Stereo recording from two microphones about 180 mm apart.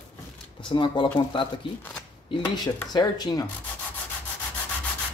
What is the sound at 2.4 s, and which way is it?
Speech, 20° left (ahead or behind).